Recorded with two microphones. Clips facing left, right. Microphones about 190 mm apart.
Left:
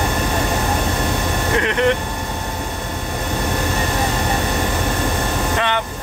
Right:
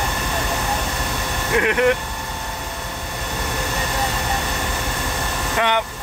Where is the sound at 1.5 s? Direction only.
10° right (ahead or behind).